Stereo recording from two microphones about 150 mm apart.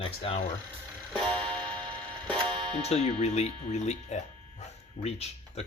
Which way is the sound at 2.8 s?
45° left (ahead or behind).